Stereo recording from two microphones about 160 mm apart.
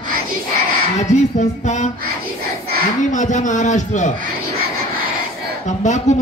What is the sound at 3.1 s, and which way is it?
Speech, 50° left (ahead or behind).